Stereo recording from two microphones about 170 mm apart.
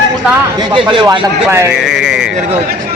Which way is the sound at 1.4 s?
15° right (ahead or behind).